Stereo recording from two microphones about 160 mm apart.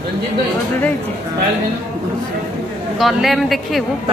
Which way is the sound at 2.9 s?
Centre (ahead or behind).